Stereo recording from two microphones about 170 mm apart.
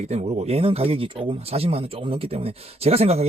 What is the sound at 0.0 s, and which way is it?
Speech, 40° right (ahead or behind).